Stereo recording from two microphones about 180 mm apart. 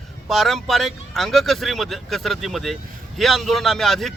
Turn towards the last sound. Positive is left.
turn(degrees=0)  # may be behind; listen again after turning